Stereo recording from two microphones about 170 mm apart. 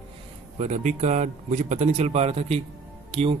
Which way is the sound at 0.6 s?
45° right (ahead or behind).